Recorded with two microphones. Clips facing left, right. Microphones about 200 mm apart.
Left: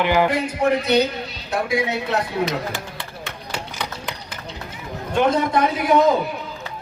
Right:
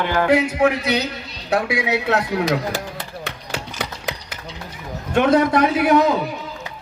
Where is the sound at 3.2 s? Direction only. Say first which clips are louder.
Left 1 dB; 65° right (ahead or behind).